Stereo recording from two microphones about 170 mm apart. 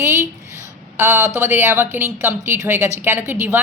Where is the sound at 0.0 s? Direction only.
15° right (ahead or behind).